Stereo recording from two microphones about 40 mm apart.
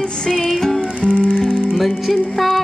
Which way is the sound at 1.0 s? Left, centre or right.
Right.